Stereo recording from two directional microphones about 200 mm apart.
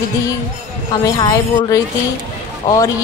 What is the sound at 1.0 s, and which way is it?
Speech, 20° left (ahead or behind).